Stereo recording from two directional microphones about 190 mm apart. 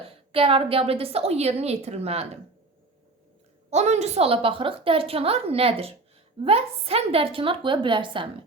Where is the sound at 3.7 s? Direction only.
35° right (ahead or behind).